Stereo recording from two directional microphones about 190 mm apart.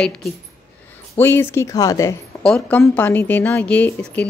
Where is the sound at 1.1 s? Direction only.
10° left (ahead or behind).